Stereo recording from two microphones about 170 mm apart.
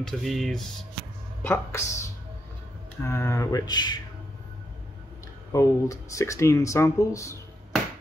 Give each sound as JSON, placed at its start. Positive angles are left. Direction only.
{"t": 0.0, "sound": "speech", "side_deg": 0}
{"t": 1.4, "sound": "speech", "side_deg": 15}
{"t": 5.5, "sound": "speech", "side_deg": 20}